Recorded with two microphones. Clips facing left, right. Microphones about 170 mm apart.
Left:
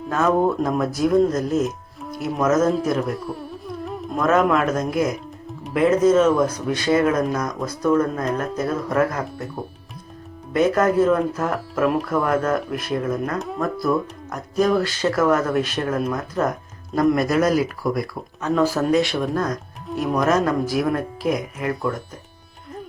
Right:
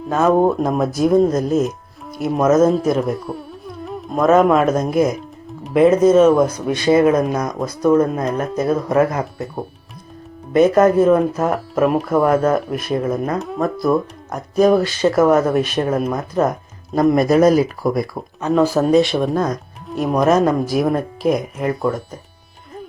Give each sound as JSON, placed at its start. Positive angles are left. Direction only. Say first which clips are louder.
{"t": 0.1, "sound": "speech", "louder": "right 4 dB", "side_deg": -20}
{"t": 3.3, "sound": "carnatic music", "louder": "right 3 dB", "side_deg": -50}
{"t": 4.1, "sound": "speech", "louder": "right 5 dB", "side_deg": -25}
{"t": 10.5, "sound": "speech", "louder": "right 6 dB", "side_deg": -20}
{"t": 12.3, "sound": "speech", "louder": "right 5 dB", "side_deg": -15}